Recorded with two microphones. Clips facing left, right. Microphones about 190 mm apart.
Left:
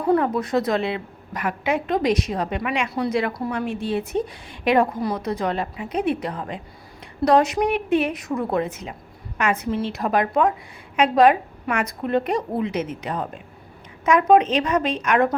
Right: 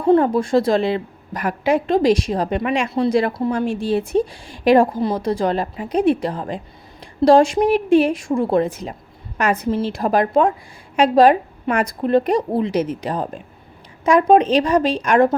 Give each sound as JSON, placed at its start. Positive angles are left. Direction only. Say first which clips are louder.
{"t": 0.0, "sound": "a woman's voice", "louder": "right 5 dB", "side_deg": -25}